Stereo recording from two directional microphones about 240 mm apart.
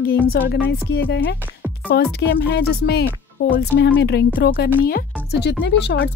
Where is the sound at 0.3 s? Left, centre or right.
Left.